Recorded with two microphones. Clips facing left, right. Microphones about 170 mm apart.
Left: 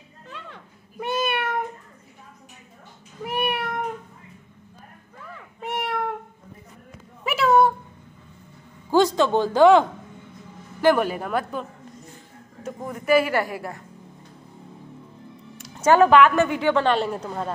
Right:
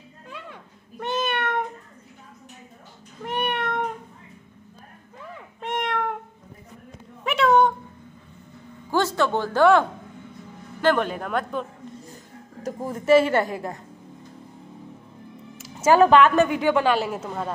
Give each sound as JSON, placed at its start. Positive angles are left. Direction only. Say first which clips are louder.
{"t": 0.3, "sound": "a sound", "louder": "right 1 dB", "side_deg": -10}
{"t": 0.9, "sound": "cat", "louder": "left 1 dB", "side_deg": 10}
{"t": 3.3, "sound": "cat", "louder": "even", "side_deg": 10}
{"t": 5.6, "sound": "cat", "louder": "right 1 dB", "side_deg": 5}
{"t": 7.2, "sound": "a sound", "louder": "even", "side_deg": 5}
{"t": 8.9, "sound": "a woman's voice", "louder": "left 4 dB", "side_deg": 15}
{"t": 12.8, "sound": "speech", "louder": "right 3 dB", "side_deg": -25}
{"t": 15.5, "sound": "music", "louder": "even", "side_deg": 0}
{"t": 15.9, "sound": "a woman's voice", "louder": "even", "side_deg": -20}